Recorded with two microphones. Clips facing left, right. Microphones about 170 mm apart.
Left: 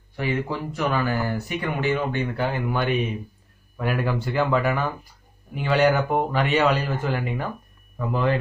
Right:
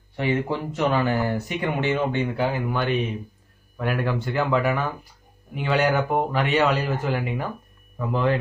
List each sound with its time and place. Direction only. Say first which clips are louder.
0.1 s speech: right 2 dB; 20° right (ahead or behind)
2.5 s speech: even; centre (ahead or behind)